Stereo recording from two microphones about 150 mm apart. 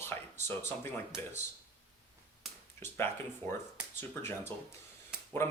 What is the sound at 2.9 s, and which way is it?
Speech, 15° left (ahead or behind).